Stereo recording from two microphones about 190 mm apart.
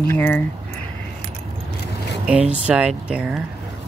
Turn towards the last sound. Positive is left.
turn(degrees=-5)  # may be behind; listen again after turning